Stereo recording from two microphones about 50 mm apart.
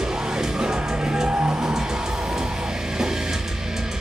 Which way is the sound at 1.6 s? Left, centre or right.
Centre.